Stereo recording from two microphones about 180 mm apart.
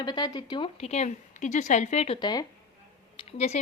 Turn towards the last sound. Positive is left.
turn(degrees=35)  # may be behind; listen again after turning